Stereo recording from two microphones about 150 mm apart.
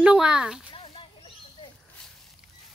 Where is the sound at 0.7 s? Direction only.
35° left (ahead or behind).